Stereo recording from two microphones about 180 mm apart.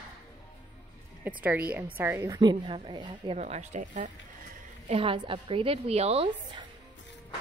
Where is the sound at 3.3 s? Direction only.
40° right (ahead or behind).